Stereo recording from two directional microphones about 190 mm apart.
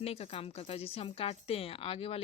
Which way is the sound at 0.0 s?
30° left (ahead or behind).